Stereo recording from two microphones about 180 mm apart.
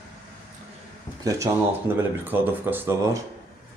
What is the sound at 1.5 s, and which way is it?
Speech, 15° right (ahead or behind).